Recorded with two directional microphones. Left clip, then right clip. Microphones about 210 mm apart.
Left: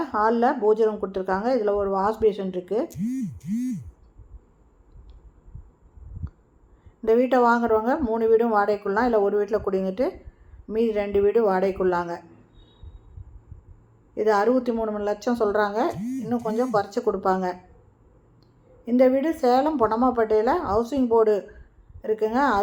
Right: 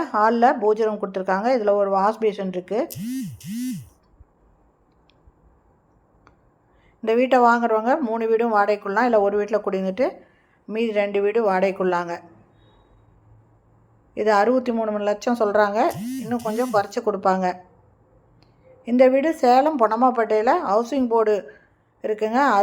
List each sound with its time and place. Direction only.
0.0 s speech: 25° right (ahead or behind)
7.0 s speech: 25° right (ahead or behind)
14.2 s speech: 25° right (ahead or behind)
18.8 s speech: 25° right (ahead or behind)